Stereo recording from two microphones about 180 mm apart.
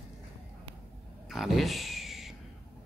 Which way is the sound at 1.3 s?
Centre (ahead or behind).